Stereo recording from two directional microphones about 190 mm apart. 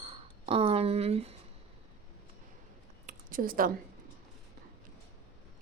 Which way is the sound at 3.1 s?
45° right (ahead or behind).